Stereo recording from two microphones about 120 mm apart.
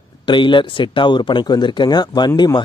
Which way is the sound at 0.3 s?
40° left (ahead or behind).